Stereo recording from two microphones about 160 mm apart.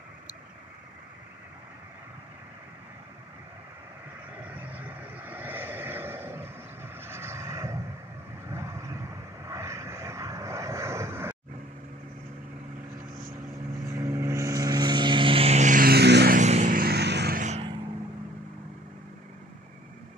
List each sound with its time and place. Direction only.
4.7 s vehicle: 10° right (ahead or behind)
13.8 s vehicle: 20° right (ahead or behind); by 16.3 s 90° right
16.3 s vehicle: 45° right (ahead or behind)
16.8 s vehicle: 90° right
17.4 s vehicle: 45° right (ahead or behind)